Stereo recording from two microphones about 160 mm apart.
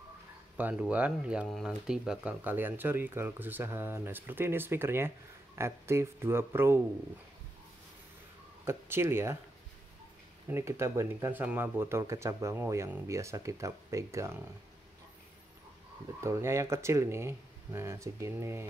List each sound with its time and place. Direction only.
0.6 s speech: 10° right (ahead or behind)
8.6 s speech: 15° right (ahead or behind)
10.5 s speech: 15° right (ahead or behind)
16.2 s speech: 15° right (ahead or behind)